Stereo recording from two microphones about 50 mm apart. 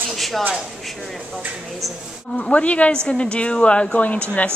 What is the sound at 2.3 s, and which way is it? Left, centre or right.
A woman's voice, centre.